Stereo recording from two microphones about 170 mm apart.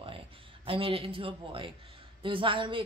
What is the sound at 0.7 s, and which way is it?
A woman's voice, 30° right (ahead or behind).